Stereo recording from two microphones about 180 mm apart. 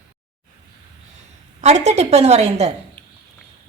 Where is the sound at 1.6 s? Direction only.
40° right (ahead or behind).